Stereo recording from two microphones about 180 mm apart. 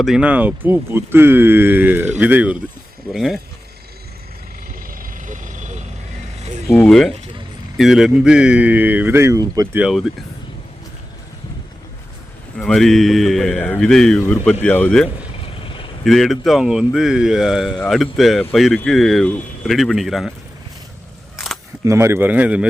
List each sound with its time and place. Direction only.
0.0 s speech: 5° right (ahead or behind)
4.7 s vehicle: 50° right (ahead or behind)
6.7 s speech: 5° left (ahead or behind); by 9.8 s 20° right (ahead or behind)
9.8 s speech: centre (ahead or behind)
12.5 s speech: 5° left (ahead or behind)
15.6 s vehicle: 25° left (ahead or behind)
16.0 s speech: centre (ahead or behind)
21.3 s camera: centre (ahead or behind)
21.8 s speech: 15° right (ahead or behind)